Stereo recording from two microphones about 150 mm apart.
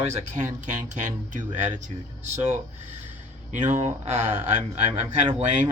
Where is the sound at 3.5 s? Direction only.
55° right (ahead or behind).